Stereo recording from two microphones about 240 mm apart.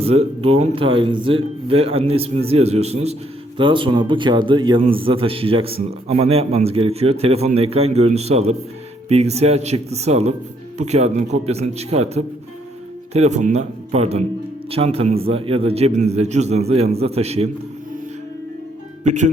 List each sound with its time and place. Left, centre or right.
0.0 s a man's voice: right
19.0 s speech: right